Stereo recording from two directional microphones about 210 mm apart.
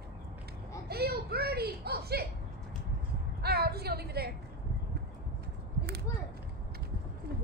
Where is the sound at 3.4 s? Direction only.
50° right (ahead or behind).